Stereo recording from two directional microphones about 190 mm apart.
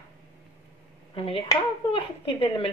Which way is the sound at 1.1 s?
30° left (ahead or behind).